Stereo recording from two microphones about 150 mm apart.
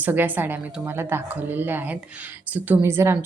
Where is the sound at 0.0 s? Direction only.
10° right (ahead or behind).